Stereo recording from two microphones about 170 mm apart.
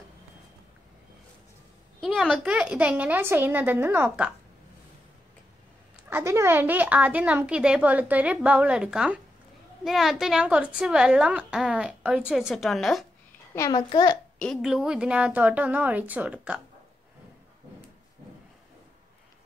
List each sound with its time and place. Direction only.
2.0 s speech: centre (ahead or behind)
6.0 s speech: 15° right (ahead or behind)
13.6 s a child's voice: 20° left (ahead or behind)
14.4 s speech: centre (ahead or behind)